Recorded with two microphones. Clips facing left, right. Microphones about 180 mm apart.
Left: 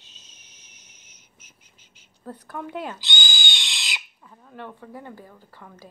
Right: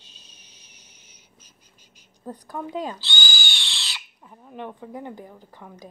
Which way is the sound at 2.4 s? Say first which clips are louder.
Right 2 dB; 15° right (ahead or behind).